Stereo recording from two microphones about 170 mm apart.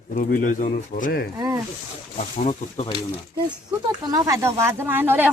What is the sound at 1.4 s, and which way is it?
Speech, 20° right (ahead or behind).